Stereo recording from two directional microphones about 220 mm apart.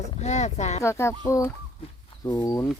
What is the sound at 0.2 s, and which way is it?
Speech, 30° left (ahead or behind).